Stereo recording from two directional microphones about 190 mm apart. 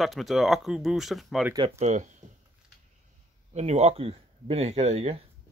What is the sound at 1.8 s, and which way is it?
Speech, 40° right (ahead or behind).